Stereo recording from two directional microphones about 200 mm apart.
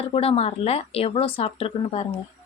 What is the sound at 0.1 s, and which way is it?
Speech, 30° left (ahead or behind).